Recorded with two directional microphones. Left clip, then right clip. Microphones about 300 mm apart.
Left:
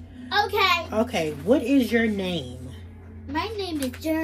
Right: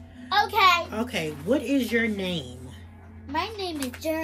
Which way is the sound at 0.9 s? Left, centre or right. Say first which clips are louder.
Left 5 dB; centre.